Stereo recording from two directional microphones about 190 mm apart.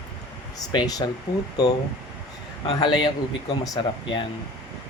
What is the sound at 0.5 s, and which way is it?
Speech, 20° left (ahead or behind).